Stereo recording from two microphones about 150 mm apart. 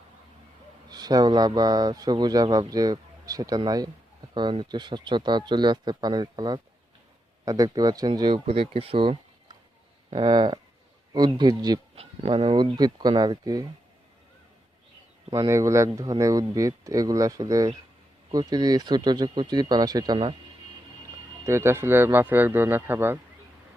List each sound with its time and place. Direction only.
0.9 s speech: 25° right (ahead or behind)
11.9 s speech: 40° right (ahead or behind)
15.3 s speech: 20° right (ahead or behind)
21.4 s speech: 15° right (ahead or behind)